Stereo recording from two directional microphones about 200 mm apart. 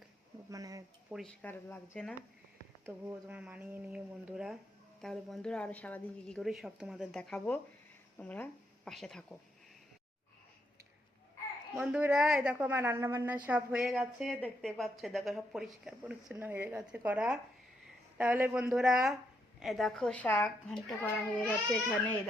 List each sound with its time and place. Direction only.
0.5 s speech: 15° right (ahead or behind)
1.1 s speech: 5° left (ahead or behind)
2.8 s a woman's voice: 10° right (ahead or behind)
11.7 s a woman's voice: 5° right (ahead or behind)